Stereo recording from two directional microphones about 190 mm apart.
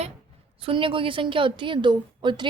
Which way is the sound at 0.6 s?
25° right (ahead or behind).